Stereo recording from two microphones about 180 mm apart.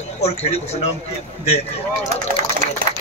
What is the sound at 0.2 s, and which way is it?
Speech, 35° left (ahead or behind).